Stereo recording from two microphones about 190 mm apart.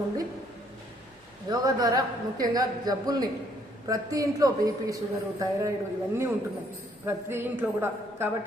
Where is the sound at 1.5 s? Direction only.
20° right (ahead or behind).